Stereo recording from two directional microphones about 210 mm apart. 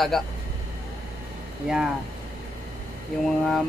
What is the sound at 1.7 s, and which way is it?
Speech, 5° right (ahead or behind).